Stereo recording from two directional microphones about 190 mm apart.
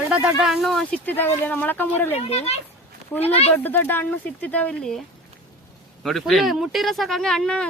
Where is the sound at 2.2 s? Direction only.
35° left (ahead or behind).